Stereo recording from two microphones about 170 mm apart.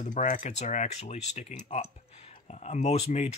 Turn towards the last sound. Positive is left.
turn(degrees=40)  # may be behind; listen again after turning